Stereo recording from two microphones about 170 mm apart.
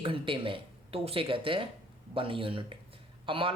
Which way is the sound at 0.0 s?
30° right (ahead or behind).